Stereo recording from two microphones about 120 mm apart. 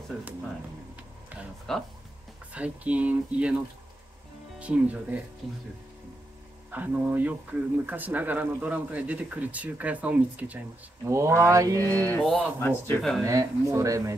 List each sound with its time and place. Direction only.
1.7 s speech: 5° left (ahead or behind)
2.5 s speech: 10° right (ahead or behind)
4.6 s speech: 10° right (ahead or behind)
5.4 s speech: centre (ahead or behind)
6.7 s speech: 15° right (ahead or behind)
11.1 s speech: 20° right (ahead or behind)
11.8 s a sound: 15° left (ahead or behind)
12.2 s speech: 5° left (ahead or behind)
12.5 s speech: 20° left (ahead or behind)
13.2 s speech: 30° right (ahead or behind)